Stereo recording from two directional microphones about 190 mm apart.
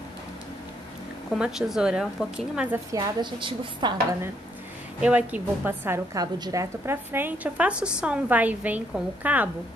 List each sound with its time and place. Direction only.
1.3 s a woman's voice: 5° right (ahead or behind)
3.2 s a woman's voice: 25° right (ahead or behind)
5.0 s a woman's voice: 5° right (ahead or behind)